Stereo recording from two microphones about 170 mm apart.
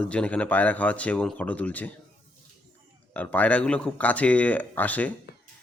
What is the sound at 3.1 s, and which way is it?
A man's voice, 10° left (ahead or behind).